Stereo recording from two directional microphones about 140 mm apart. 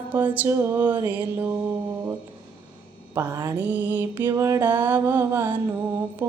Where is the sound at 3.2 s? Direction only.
20° right (ahead or behind).